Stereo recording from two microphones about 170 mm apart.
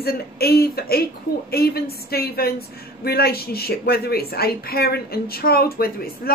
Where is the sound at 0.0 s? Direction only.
65° left (ahead or behind).